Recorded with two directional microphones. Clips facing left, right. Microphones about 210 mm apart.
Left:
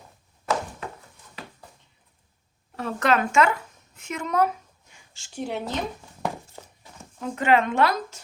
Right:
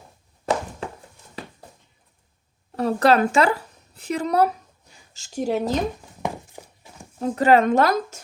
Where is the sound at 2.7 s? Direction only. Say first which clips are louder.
Right 6 dB; 35° right (ahead or behind).